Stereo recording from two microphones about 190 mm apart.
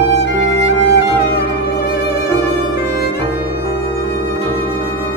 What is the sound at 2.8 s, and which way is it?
Violin, 60° left (ahead or behind).